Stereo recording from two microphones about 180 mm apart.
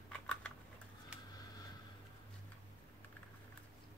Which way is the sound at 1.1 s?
5° right (ahead or behind).